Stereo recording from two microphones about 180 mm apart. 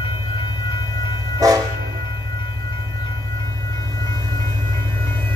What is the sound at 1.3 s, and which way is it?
Train, 20° right (ahead or behind).